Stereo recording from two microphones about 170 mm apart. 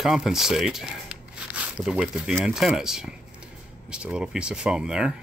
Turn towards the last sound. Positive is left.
turn(degrees=-5)  # may be behind; listen again after turning